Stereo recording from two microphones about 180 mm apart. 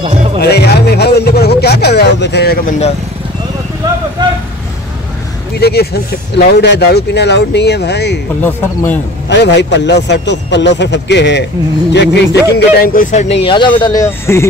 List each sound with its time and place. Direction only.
0.0 s music: 40° right (ahead or behind)
0.4 s a man's voice: 65° left (ahead or behind)
5.6 s a man's voice: 60° left (ahead or behind)
8.4 s speech: 10° left (ahead or behind)
9.3 s a man's voice: 75° left (ahead or behind); by 13.3 s 45° left (ahead or behind)
13.4 s speech: 25° left (ahead or behind)